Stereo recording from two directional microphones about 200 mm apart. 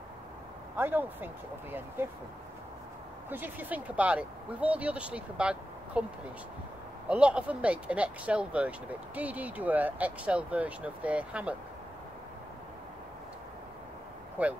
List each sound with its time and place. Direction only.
0.7 s speech: 10° right (ahead or behind)
3.3 s speech: 10° right (ahead or behind)
7.1 s speech: 5° right (ahead or behind)
14.4 s speech: 5° right (ahead or behind)